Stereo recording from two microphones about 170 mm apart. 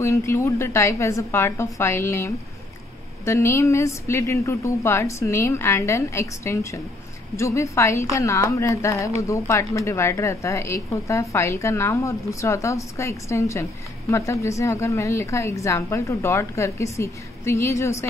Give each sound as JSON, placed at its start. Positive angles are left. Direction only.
{"t": 0.0, "sound": "a woman's voice", "side_deg": 15}